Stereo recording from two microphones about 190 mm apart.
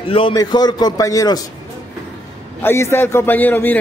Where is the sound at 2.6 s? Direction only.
15° left (ahead or behind).